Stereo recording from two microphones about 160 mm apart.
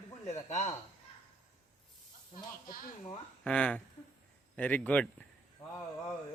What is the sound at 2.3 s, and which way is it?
Snake, 60° left (ahead or behind).